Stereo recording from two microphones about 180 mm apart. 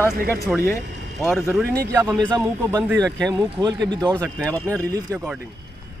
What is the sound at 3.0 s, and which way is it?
Speech, 5° left (ahead or behind).